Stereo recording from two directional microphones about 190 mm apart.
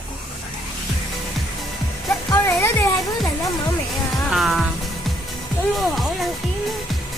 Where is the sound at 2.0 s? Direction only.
15° left (ahead or behind).